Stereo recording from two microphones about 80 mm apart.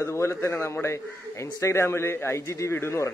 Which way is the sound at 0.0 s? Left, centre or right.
Left.